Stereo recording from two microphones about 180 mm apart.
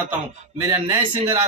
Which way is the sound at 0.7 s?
15° right (ahead or behind).